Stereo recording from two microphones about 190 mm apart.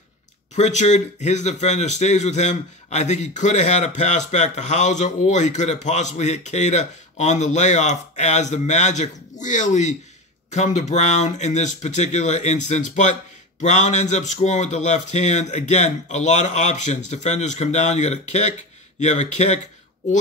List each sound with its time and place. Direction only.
0.6 s speech: 40° left (ahead or behind)